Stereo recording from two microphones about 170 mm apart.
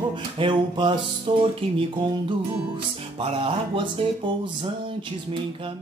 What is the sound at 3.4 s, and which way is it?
Music, 30° right (ahead or behind).